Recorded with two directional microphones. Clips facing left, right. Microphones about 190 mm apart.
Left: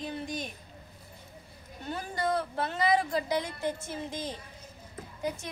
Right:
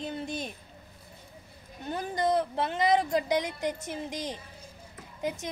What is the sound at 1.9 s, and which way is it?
A woman's voice, 20° right (ahead or behind).